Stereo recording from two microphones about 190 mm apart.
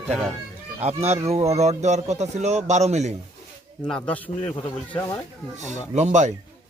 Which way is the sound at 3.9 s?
5° left (ahead or behind).